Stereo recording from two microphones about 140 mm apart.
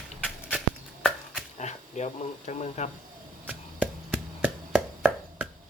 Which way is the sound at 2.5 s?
55° left (ahead or behind).